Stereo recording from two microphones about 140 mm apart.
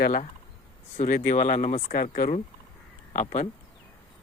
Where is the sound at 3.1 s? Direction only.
60° left (ahead or behind).